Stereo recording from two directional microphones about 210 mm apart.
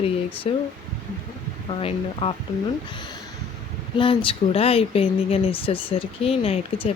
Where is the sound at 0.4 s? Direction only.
30° left (ahead or behind).